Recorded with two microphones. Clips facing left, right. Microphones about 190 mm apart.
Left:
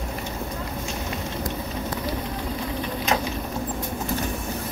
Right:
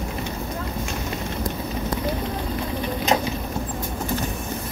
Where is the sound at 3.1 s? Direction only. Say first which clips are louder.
Right 3 dB; 25° right (ahead or behind).